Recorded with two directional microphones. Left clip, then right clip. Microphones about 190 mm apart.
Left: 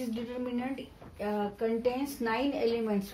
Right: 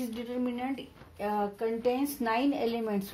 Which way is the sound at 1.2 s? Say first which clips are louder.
Right 1 dB; 50° right (ahead or behind).